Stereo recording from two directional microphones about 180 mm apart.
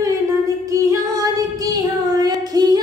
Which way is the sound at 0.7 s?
20° right (ahead or behind).